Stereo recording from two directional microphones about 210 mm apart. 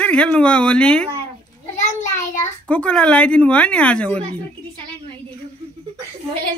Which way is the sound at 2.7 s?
5° left (ahead or behind).